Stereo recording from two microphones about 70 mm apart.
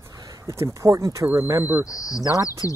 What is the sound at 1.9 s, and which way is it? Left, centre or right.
Speech, left.